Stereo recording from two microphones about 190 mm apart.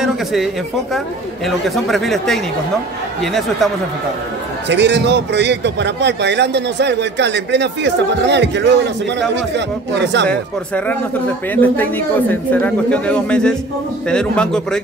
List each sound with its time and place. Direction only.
0.0 s a sound: centre (ahead or behind)
0.9 s speech: centre (ahead or behind)
4.6 s a man's voice: 65° right (ahead or behind)
10.2 s speech: 5° left (ahead or behind)